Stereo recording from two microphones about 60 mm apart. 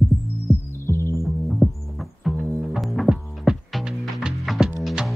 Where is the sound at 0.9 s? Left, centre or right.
Left.